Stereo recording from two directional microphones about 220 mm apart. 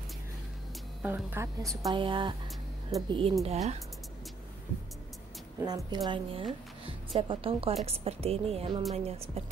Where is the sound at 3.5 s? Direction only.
30° right (ahead or behind).